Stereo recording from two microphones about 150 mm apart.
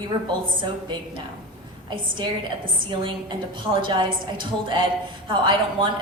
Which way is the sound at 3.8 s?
30° right (ahead or behind).